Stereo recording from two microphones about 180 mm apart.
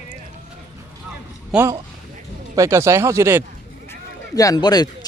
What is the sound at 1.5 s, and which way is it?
Speech, 5° right (ahead or behind).